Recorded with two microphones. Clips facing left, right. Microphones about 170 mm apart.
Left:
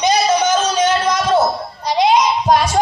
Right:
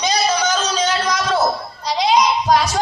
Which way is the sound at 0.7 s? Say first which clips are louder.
Left 4 dB; 55° left (ahead or behind).